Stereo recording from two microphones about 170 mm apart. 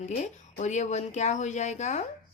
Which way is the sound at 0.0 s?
45° left (ahead or behind).